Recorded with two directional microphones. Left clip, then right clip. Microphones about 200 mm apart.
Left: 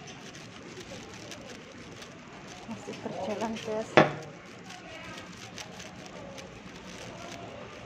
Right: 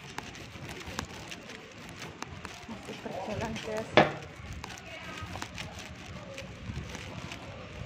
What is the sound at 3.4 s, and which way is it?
Speech, 25° left (ahead or behind).